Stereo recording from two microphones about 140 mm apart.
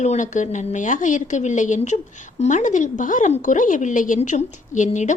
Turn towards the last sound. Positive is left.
turn(degrees=60)  # may be behind; listen again after turning